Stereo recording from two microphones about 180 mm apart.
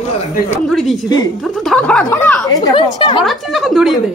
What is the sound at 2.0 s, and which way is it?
Speech, 10° left (ahead or behind).